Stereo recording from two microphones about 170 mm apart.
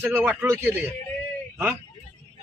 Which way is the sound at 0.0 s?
10° right (ahead or behind).